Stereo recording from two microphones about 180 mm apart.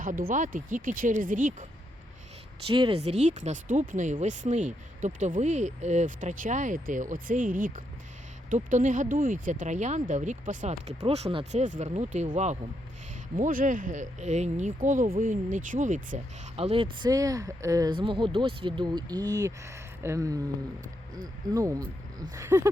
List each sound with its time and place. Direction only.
0.3 s speech: 45° right (ahead or behind)
2.6 s speech: 30° right (ahead or behind)
11.6 s speech: 45° right (ahead or behind)
13.3 s speech: 50° right (ahead or behind); by 20.4 s 20° right (ahead or behind)
21.5 s speech: 20° right (ahead or behind)
22.2 s a sound: 20° right (ahead or behind)